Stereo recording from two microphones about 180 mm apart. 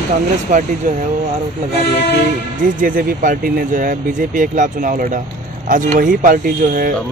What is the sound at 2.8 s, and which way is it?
Speech, 50° right (ahead or behind).